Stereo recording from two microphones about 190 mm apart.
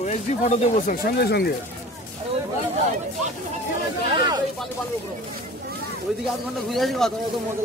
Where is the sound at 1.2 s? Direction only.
60° left (ahead or behind).